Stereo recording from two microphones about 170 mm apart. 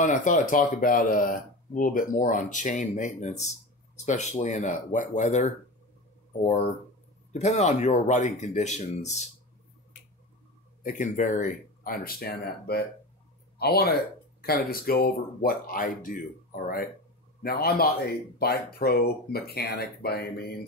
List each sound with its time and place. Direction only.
0.0 s speech: 50° left (ahead or behind)
10.8 s speech: 50° left (ahead or behind)
17.4 s speech: 65° left (ahead or behind)